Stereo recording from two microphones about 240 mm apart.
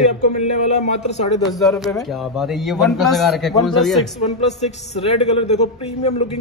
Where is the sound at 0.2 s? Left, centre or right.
Left.